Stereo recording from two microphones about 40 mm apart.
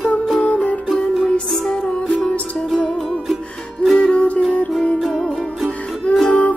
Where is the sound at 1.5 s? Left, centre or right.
Centre.